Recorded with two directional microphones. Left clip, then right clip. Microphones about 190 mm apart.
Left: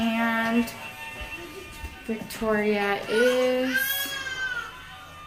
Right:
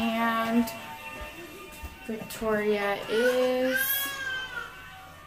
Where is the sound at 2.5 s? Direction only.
15° left (ahead or behind).